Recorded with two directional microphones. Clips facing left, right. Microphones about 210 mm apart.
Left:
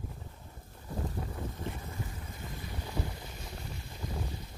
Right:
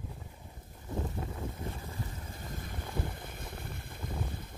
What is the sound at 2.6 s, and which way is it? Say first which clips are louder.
Boat: left 1 dB; 50° right (ahead or behind).